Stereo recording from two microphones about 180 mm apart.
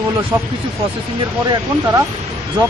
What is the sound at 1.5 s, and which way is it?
Speech, 20° right (ahead or behind).